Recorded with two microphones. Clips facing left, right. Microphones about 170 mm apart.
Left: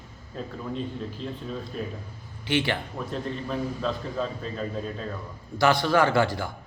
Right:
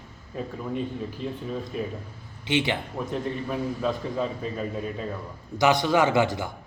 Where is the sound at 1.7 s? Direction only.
10° right (ahead or behind).